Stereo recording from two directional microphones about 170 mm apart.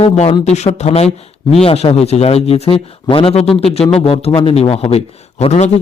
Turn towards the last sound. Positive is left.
turn(degrees=40)  # may be behind; listen again after turning